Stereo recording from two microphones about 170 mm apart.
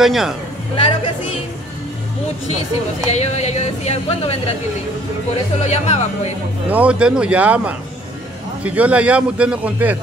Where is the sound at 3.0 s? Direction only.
40° left (ahead or behind).